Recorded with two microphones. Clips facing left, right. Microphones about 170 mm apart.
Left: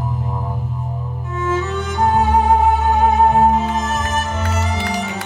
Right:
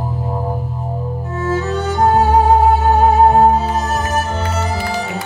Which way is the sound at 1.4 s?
35° right (ahead or behind).